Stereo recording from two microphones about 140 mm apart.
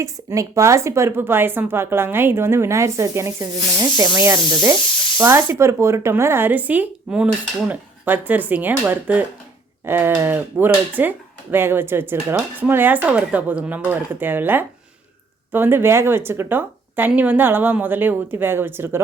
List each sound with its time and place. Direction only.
0.0 s speech: 20° right (ahead or behind)